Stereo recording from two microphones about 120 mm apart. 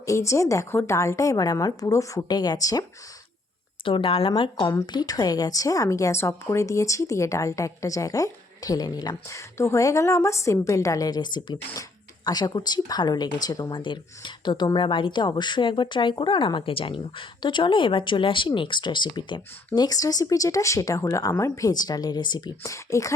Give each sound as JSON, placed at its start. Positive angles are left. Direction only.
{"t": 0.0, "sound": "a woman's voice", "side_deg": 25}
{"t": 3.8, "sound": "a woman's voice", "side_deg": 50}